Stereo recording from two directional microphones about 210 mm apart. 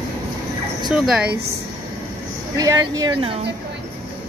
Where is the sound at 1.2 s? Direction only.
50° right (ahead or behind).